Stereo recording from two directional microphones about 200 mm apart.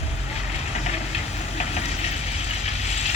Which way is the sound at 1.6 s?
35° left (ahead or behind).